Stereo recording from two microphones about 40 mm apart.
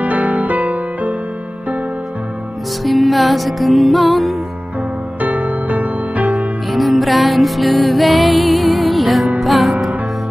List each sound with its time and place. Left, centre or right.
0.0 s music: right
2.8 s music: centre
5.2 s music: right
6.7 s music: centre